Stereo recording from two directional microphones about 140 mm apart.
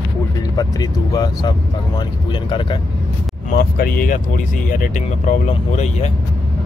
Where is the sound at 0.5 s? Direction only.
25° left (ahead or behind).